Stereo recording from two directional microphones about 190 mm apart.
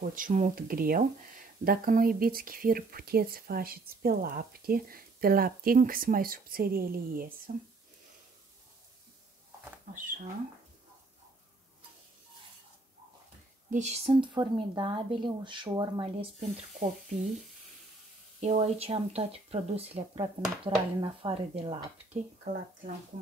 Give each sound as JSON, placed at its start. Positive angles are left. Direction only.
{"t": 0.0, "sound": "speech", "side_deg": -45}
{"t": 13.7, "sound": "speech", "side_deg": -35}
{"t": 14.2, "sound": "speech", "side_deg": -25}
{"t": 18.4, "sound": "speech", "side_deg": -35}